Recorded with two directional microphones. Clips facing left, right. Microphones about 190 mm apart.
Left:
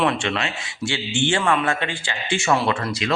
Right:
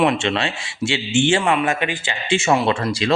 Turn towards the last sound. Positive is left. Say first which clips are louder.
# right 3 dB
turn(degrees=-25)  # may be behind; listen again after turning